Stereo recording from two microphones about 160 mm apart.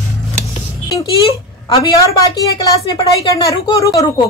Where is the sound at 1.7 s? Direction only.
25° left (ahead or behind).